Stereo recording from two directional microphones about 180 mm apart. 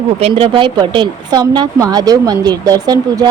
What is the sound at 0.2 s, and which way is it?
A woman's voice, 30° right (ahead or behind).